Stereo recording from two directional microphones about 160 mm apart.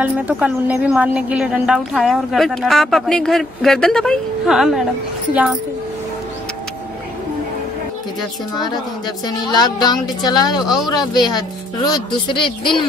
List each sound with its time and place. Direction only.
0.0 s a woman's voice: 10° right (ahead or behind)
9.5 s speech: 25° left (ahead or behind)